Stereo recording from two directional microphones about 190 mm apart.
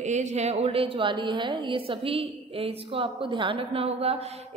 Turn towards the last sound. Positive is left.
turn(degrees=-30)  # may be behind; listen again after turning